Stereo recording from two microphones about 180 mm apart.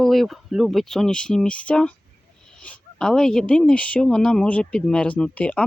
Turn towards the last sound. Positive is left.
turn(degrees=5)  # may be behind; listen again after turning